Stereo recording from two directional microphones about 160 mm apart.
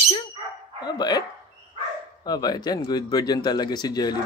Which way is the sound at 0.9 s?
25° left (ahead or behind).